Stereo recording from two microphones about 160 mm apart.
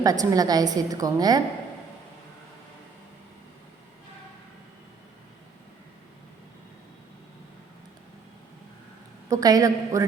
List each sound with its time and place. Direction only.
0.0 s a woman's voice: 20° right (ahead or behind)
9.3 s a woman's voice: 20° right (ahead or behind)